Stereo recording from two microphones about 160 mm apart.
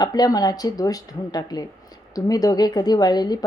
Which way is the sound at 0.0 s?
25° left (ahead or behind).